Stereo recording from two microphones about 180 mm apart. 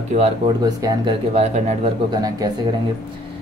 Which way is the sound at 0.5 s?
20° right (ahead or behind).